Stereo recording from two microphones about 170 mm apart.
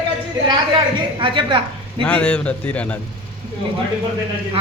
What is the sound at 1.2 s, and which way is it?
Speech, 30° right (ahead or behind).